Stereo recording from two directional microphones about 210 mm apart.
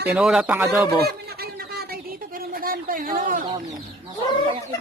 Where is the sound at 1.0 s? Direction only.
50° right (ahead or behind).